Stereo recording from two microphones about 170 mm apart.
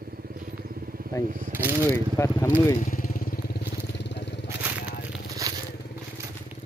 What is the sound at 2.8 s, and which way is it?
Vehicle, 50° left (ahead or behind).